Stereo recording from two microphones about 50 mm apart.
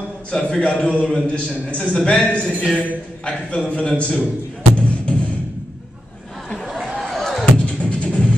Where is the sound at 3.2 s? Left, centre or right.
Centre.